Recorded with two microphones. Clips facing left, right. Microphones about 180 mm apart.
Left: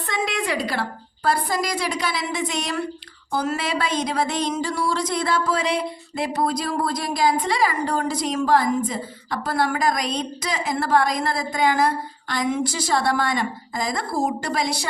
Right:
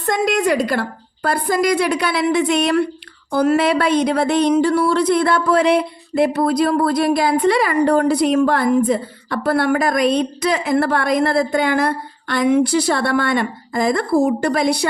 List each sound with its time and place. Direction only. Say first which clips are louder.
0.0 s speech: right 8 dB; 40° right (ahead or behind)